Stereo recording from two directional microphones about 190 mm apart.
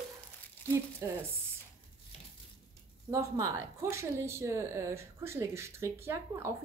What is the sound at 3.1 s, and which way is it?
A woman's voice, 15° right (ahead or behind).